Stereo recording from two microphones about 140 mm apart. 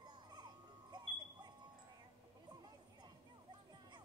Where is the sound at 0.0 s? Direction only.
30° right (ahead or behind).